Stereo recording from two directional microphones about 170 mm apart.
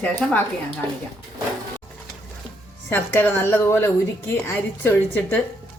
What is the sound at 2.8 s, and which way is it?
Speech, 10° left (ahead or behind).